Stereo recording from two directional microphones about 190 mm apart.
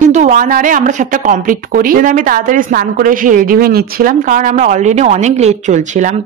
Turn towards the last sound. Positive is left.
turn(degrees=-40)  # may be behind; listen again after turning